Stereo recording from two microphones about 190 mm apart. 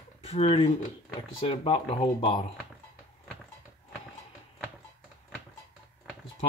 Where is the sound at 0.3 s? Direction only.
30° left (ahead or behind).